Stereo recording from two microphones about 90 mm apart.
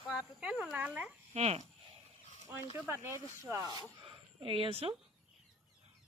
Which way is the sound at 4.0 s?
70° right (ahead or behind).